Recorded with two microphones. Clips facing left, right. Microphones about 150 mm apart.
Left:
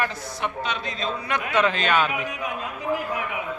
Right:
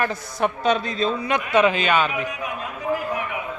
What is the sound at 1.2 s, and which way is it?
Speech, 15° right (ahead or behind).